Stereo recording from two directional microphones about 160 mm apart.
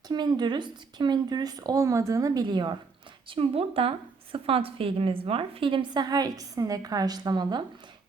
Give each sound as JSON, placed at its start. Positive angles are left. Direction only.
{"t": 0.1, "sound": "a woman's voice", "side_deg": -25}